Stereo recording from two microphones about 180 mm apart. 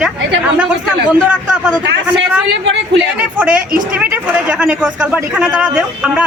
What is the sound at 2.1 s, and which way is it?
Speech, 80° right.